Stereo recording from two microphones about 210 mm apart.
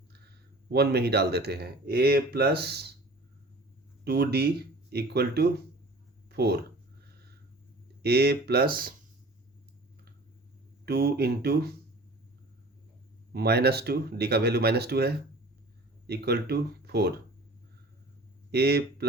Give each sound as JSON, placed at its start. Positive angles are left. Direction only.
{"t": 0.7, "sound": "speech", "side_deg": -50}
{"t": 4.0, "sound": "speech", "side_deg": -50}
{"t": 8.0, "sound": "speech", "side_deg": -50}
{"t": 10.8, "sound": "speech", "side_deg": -50}
{"t": 13.3, "sound": "speech", "side_deg": -50}
{"t": 18.5, "sound": "speech", "side_deg": -50}